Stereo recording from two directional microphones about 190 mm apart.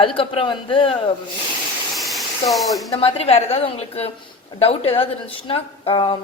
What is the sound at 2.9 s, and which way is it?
A woman's voice, 30° left (ahead or behind).